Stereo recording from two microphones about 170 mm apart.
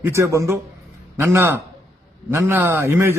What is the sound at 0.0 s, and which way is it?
A man's voice, 15° right (ahead or behind).